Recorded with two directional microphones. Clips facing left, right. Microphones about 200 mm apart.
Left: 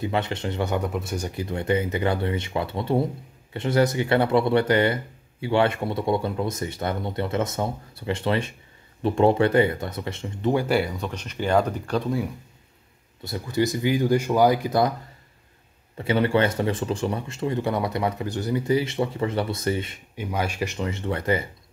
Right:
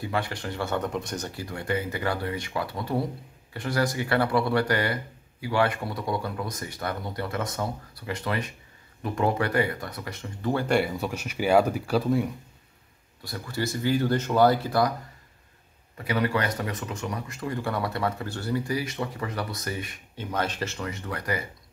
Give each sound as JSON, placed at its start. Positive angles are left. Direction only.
{"t": 0.0, "sound": "speech", "side_deg": 20}
{"t": 1.4, "sound": "speech", "side_deg": 20}
{"t": 10.7, "sound": "speech", "side_deg": -5}
{"t": 13.2, "sound": "speech", "side_deg": 20}
{"t": 16.0, "sound": "speech", "side_deg": 25}
{"t": 20.2, "sound": "speech", "side_deg": 10}